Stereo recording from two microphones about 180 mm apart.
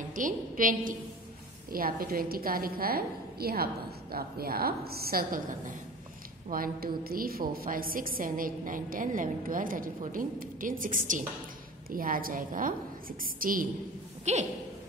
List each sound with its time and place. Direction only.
0.1 s a woman's voice: 45° right (ahead or behind)
14.3 s a woman's voice: 40° right (ahead or behind)